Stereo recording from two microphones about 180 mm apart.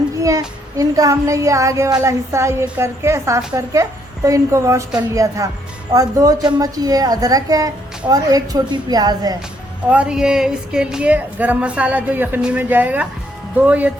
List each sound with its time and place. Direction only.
0.2 s music: 20° right (ahead or behind)
5.9 s a woman's voice: 20° right (ahead or behind)
9.9 s music: 5° right (ahead or behind)